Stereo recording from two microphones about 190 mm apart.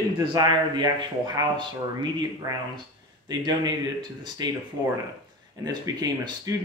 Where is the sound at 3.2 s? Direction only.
20° right (ahead or behind).